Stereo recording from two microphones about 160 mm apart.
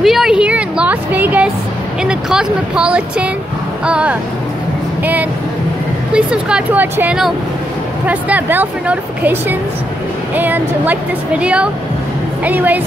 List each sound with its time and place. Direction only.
0.0 s music: centre (ahead or behind)
2.0 s a woman's voice: 5° right (ahead or behind)
6.1 s a woman's voice: 5° right (ahead or behind)